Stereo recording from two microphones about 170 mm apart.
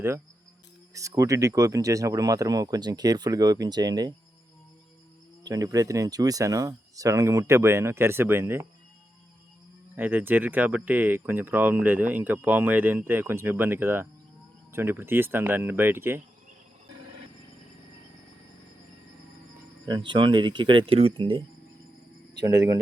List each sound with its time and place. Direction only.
0.9 s speech: 20° right (ahead or behind)
5.4 s speech: 20° right (ahead or behind)
9.9 s speech: 10° right (ahead or behind)
19.8 s speech: 25° right (ahead or behind)